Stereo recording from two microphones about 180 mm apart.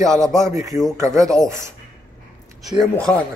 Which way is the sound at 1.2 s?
5° left (ahead or behind).